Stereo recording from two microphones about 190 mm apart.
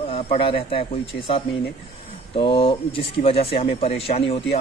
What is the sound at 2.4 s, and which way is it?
Speech, 25° left (ahead or behind).